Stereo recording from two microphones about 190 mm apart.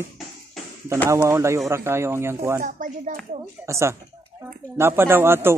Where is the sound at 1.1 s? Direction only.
15° right (ahead or behind).